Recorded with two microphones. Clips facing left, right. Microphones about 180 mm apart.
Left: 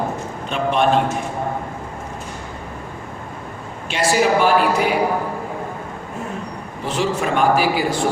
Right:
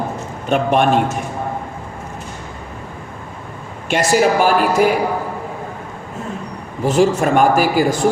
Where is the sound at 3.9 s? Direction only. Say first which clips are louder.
Right 3 dB; 45° right (ahead or behind).